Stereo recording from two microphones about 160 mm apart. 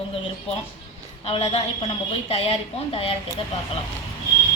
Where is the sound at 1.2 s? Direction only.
40° left (ahead or behind).